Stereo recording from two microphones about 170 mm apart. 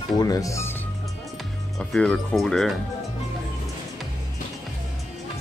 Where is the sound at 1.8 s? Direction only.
5° left (ahead or behind).